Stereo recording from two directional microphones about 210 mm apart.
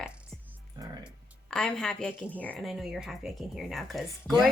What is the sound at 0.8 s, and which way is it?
Speech, 20° right (ahead or behind).